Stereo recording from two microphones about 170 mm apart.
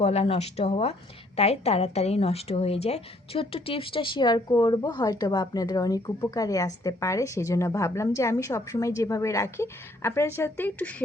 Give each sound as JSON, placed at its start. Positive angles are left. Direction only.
{"t": 0.0, "sound": "a woman's voice", "side_deg": 35}